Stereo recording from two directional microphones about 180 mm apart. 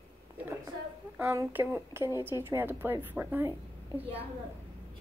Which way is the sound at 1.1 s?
15° right (ahead or behind).